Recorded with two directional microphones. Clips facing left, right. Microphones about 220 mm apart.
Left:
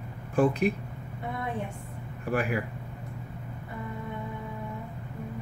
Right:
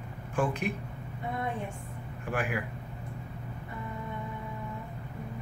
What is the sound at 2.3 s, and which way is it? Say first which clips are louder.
Speech: left 4 dB; 35° left (ahead or behind).